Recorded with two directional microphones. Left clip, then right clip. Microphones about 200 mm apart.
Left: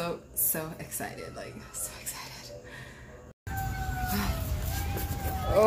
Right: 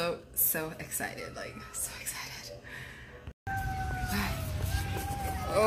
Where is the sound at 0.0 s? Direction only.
10° left (ahead or behind).